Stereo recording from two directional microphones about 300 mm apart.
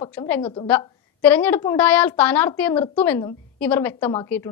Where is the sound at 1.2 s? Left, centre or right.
Centre.